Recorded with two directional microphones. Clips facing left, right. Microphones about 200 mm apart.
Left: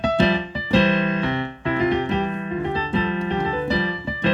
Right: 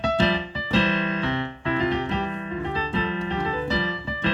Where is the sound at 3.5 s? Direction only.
15° left (ahead or behind).